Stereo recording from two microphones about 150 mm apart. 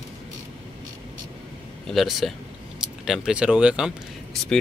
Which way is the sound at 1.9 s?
Centre (ahead or behind).